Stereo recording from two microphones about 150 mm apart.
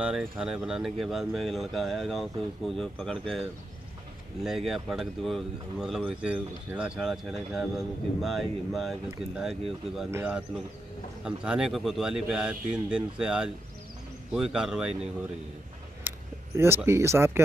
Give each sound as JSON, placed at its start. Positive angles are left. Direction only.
{"t": 0.0, "sound": "speech", "side_deg": -5}
{"t": 16.1, "sound": "vehicle", "side_deg": -10}
{"t": 16.5, "sound": "speech", "side_deg": -15}